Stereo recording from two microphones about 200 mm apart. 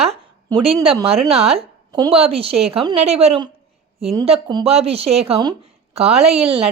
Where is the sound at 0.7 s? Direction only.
30° right (ahead or behind).